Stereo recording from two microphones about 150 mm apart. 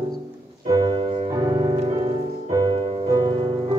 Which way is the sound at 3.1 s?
30° right (ahead or behind).